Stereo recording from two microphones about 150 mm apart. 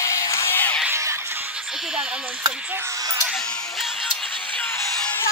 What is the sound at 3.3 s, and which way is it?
Music, 5° left (ahead or behind).